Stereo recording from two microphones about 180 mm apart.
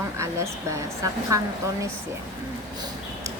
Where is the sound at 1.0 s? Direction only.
15° right (ahead or behind).